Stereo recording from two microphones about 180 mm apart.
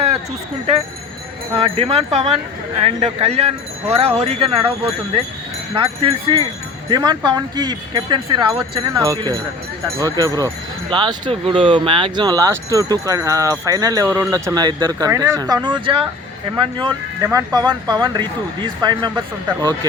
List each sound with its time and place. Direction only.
1.5 s speech: 30° right (ahead or behind)
5.7 s speech: 30° right (ahead or behind)